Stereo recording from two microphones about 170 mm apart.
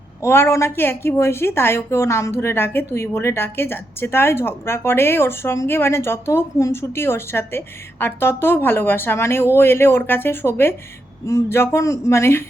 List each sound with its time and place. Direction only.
0.2 s a woman's voice: 15° left (ahead or behind)